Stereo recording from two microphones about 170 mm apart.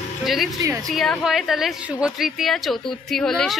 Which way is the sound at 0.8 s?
Centre (ahead or behind).